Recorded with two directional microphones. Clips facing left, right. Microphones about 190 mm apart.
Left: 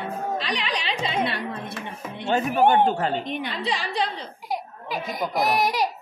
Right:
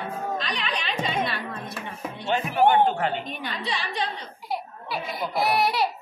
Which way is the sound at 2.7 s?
40° left (ahead or behind).